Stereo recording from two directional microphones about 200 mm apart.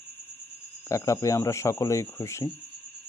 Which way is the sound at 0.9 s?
15° left (ahead or behind).